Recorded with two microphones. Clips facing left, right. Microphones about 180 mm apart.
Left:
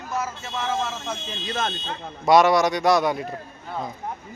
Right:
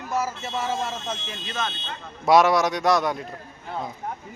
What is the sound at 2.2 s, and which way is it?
Speech, 5° right (ahead or behind).